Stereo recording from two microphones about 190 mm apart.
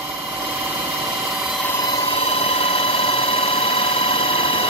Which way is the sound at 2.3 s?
30° left (ahead or behind).